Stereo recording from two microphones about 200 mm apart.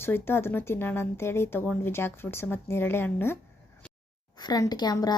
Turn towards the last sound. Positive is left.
turn(degrees=20)  # may be behind; listen again after turning